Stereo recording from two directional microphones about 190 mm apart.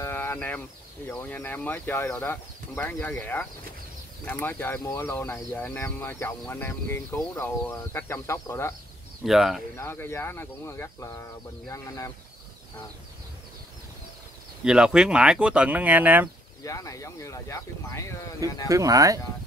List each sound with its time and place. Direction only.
0.0 s a sound: 10° left (ahead or behind)
1.0 s speech: 10° left (ahead or behind)
9.2 s speech: centre (ahead or behind)
9.8 s speech: 15° left (ahead or behind)
14.6 s speech: 5° right (ahead or behind)
16.6 s speech: 15° left (ahead or behind)
18.7 s speech: 15° right (ahead or behind)